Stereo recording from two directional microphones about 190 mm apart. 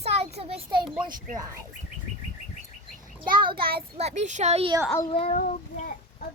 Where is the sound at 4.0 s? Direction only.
35° right (ahead or behind).